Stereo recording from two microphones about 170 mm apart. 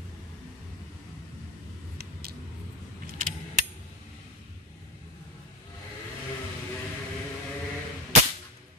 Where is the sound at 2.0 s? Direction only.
65° right (ahead or behind).